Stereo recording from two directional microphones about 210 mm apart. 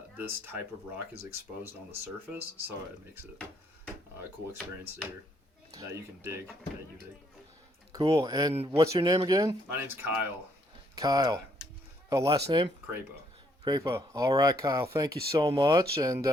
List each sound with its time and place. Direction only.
0.2 s speech: 10° right (ahead or behind)
5.7 s speech: 15° right (ahead or behind)
7.9 s a man's voice: 20° right (ahead or behind)